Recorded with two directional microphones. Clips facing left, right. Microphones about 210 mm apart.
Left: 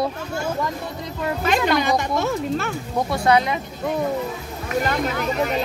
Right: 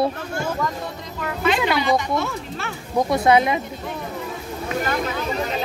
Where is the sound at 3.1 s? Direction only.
20° right (ahead or behind).